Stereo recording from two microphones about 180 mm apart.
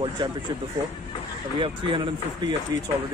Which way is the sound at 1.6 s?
30° right (ahead or behind).